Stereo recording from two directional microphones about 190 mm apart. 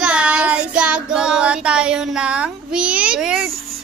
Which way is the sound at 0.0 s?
5° right (ahead or behind).